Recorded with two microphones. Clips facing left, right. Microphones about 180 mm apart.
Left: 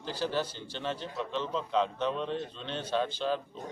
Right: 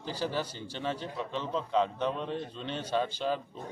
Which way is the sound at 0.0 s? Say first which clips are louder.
Left 1 dB; 10° right (ahead or behind).